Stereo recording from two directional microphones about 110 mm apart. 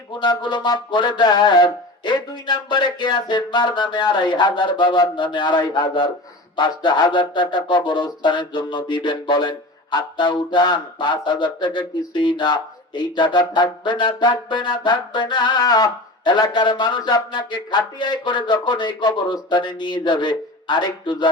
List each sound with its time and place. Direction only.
0.1 s music: 45° left (ahead or behind)